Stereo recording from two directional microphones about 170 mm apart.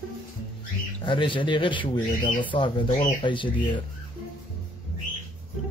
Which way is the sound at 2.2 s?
50° left (ahead or behind).